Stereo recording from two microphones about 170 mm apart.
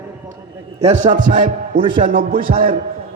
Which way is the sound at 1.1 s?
50° right (ahead or behind).